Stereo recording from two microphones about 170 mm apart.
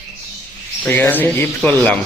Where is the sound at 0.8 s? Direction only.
10° left (ahead or behind).